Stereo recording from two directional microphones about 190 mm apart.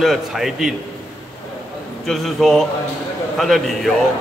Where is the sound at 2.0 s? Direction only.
Centre (ahead or behind).